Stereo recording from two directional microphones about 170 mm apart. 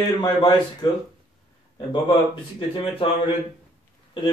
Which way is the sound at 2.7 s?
30° left (ahead or behind).